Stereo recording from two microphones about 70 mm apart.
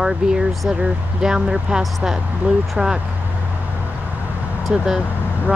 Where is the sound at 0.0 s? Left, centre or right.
Centre.